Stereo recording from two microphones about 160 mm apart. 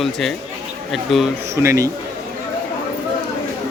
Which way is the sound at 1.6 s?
20° right (ahead or behind).